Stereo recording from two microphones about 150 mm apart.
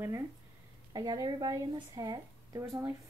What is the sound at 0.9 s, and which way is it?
A woman's voice, 25° right (ahead or behind).